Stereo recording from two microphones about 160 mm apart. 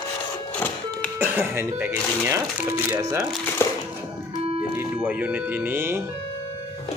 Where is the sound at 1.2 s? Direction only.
15° right (ahead or behind).